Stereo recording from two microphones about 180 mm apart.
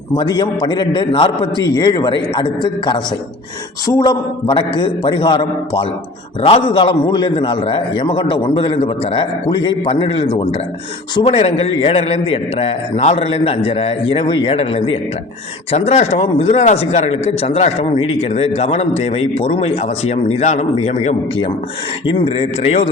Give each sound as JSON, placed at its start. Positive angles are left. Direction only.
{"t": 0.2, "sound": "a man's voice", "side_deg": 25}